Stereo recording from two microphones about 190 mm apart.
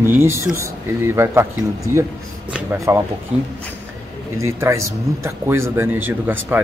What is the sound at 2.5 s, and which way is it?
Speech, 15° right (ahead or behind).